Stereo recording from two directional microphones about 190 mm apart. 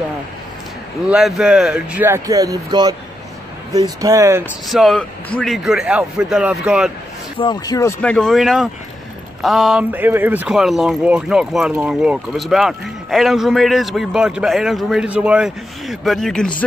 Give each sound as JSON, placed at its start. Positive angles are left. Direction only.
{"t": 1.0, "sound": "speech", "side_deg": -5}
{"t": 4.6, "sound": "speech", "side_deg": 0}
{"t": 7.3, "sound": "speech", "side_deg": 20}
{"t": 8.0, "sound": "speech", "side_deg": 5}